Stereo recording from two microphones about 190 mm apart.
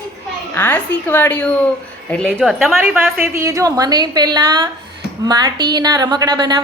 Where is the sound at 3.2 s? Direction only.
15° right (ahead or behind).